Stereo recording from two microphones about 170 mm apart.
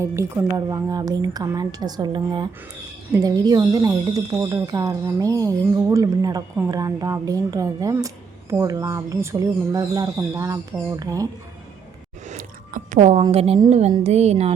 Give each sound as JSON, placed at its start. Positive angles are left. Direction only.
{"t": 0.0, "sound": "speech", "side_deg": -20}
{"t": 12.3, "sound": "a sound", "side_deg": -50}
{"t": 13.3, "sound": "speech", "side_deg": -35}